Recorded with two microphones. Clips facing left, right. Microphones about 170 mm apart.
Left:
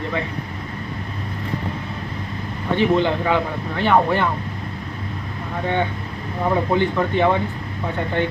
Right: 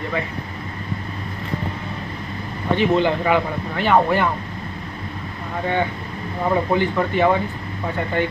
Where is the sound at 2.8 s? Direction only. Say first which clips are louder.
Even; 15° right (ahead or behind).